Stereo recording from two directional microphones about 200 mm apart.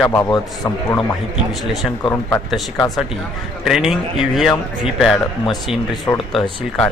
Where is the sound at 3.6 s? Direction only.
Centre (ahead or behind).